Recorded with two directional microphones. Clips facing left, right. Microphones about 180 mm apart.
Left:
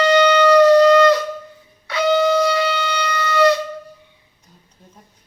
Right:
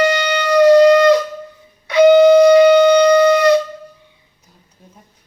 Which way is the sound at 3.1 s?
15° right (ahead or behind).